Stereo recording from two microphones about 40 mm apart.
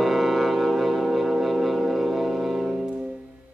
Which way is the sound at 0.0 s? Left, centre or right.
Centre.